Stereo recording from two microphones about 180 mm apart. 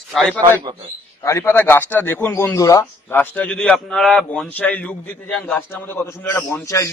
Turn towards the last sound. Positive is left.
turn(degrees=15)  # may be behind; listen again after turning